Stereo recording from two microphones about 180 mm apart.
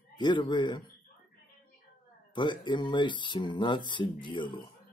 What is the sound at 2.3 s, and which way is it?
Speech, 25° left (ahead or behind).